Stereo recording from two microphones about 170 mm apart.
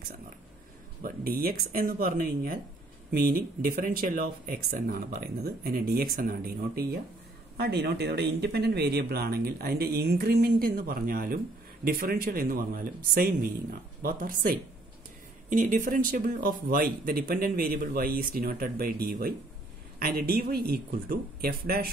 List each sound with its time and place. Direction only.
1.0 s speech: 60° right (ahead or behind)
7.5 s speech: 70° right (ahead or behind)